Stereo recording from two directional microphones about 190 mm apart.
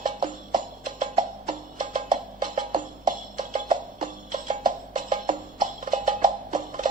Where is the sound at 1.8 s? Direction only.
45° right (ahead or behind).